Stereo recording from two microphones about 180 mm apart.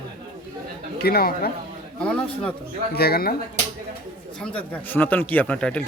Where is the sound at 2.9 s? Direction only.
60° left (ahead or behind).